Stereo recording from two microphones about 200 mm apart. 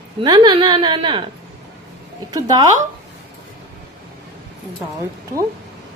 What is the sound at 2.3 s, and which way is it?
Speech, 20° right (ahead or behind).